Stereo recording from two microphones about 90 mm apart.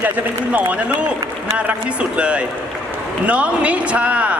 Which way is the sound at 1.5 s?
15° right (ahead or behind).